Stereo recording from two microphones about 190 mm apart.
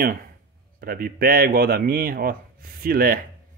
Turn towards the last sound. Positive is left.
turn(degrees=-50)  # may be behind; listen again after turning